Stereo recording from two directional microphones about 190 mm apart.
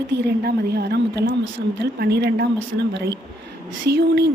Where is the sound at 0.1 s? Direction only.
55° right (ahead or behind).